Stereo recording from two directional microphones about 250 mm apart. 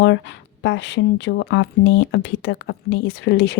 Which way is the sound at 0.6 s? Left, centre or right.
Left.